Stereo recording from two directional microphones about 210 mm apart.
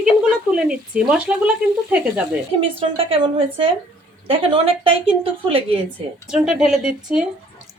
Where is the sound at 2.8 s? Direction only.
25° right (ahead or behind).